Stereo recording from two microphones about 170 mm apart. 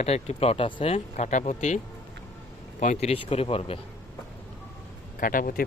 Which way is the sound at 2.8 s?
40° left (ahead or behind).